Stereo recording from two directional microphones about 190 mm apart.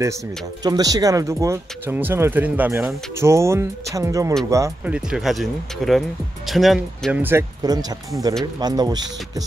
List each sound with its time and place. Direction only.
0.7 s speech: 20° right (ahead or behind)
4.9 s speech: centre (ahead or behind); by 9.1 s 20° right (ahead or behind)